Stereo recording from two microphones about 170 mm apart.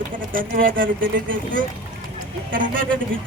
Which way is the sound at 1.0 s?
90° right.